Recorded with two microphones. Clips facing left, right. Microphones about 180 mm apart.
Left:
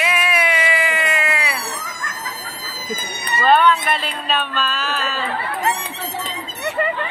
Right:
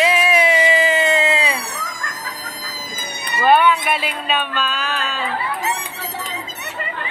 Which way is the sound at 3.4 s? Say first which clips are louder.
Right 1 dB; 10° right (ahead or behind).